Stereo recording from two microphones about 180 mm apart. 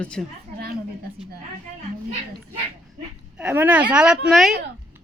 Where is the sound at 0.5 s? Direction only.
55° right (ahead or behind).